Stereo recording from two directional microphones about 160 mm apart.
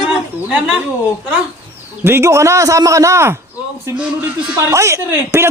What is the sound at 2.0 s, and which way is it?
Speech, 15° right (ahead or behind).